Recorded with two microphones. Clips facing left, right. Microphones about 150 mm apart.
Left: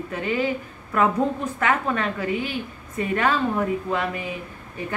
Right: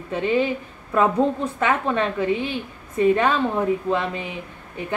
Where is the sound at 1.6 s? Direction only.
20° right (ahead or behind).